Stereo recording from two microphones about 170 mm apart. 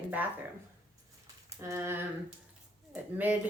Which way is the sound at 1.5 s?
20° right (ahead or behind).